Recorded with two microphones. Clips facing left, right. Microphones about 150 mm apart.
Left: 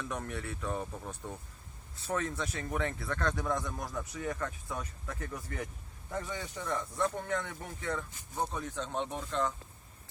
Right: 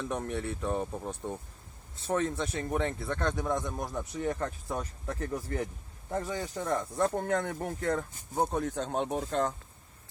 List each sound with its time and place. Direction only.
0.0 s speech: 25° right (ahead or behind); by 9.6 s 45° right (ahead or behind)